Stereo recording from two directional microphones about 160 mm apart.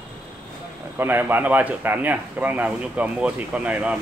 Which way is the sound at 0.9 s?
15° right (ahead or behind).